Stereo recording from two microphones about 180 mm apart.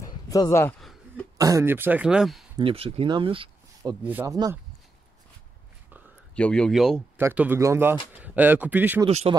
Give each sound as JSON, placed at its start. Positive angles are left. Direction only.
{"t": 0.0, "sound": "a sound", "side_deg": 20}
{"t": 0.7, "sound": "a sound", "side_deg": 0}
{"t": 1.4, "sound": "speech", "side_deg": -15}
{"t": 2.5, "sound": "speech", "side_deg": -30}
{"t": 4.0, "sound": "speech", "side_deg": -10}
{"t": 6.3, "sound": "speech", "side_deg": 5}
{"t": 7.2, "sound": "speech", "side_deg": -10}
{"t": 9.0, "sound": "speech", "side_deg": -35}